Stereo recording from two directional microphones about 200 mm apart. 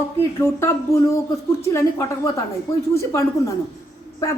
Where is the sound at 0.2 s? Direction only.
15° left (ahead or behind).